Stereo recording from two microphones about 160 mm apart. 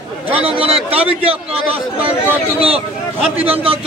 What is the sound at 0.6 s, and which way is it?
A man's voice, 35° right (ahead or behind).